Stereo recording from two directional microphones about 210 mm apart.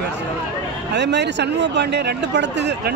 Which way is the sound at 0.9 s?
55° right (ahead or behind).